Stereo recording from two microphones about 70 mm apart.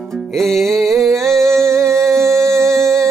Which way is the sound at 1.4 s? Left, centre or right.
Right.